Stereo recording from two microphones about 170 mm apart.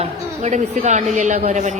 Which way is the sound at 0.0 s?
40° right (ahead or behind).